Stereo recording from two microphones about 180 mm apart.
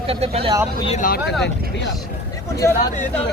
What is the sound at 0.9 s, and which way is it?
Speech, 50° left (ahead or behind).